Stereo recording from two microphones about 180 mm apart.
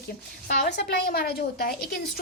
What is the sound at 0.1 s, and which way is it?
A woman's voice, 60° left (ahead or behind).